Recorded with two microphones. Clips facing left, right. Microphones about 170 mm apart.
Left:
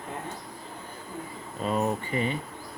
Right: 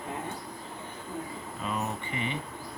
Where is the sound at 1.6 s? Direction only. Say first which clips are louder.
Left 7 dB; 35° left (ahead or behind).